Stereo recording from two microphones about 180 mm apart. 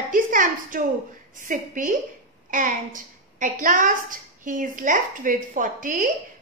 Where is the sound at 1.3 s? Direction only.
45° right (ahead or behind).